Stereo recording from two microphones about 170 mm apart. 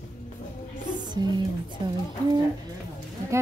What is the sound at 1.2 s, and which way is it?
Music, 25° right (ahead or behind).